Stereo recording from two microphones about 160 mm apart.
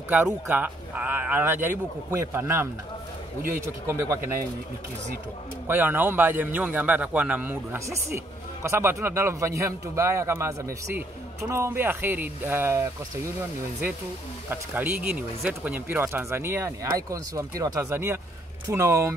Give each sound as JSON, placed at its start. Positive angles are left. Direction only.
{"t": 0.5, "sound": "a man's voice", "side_deg": -10}
{"t": 3.9, "sound": "a man's voice", "side_deg": -15}
{"t": 5.7, "sound": "a man's voice", "side_deg": -10}
{"t": 14.5, "sound": "a man's voice", "side_deg": -10}